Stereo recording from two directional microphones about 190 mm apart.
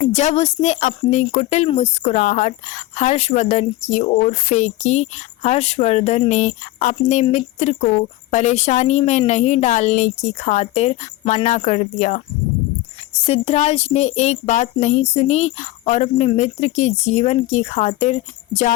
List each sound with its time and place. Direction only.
0.0 s speech: 35° left (ahead or behind)
13.2 s speech: 30° left (ahead or behind)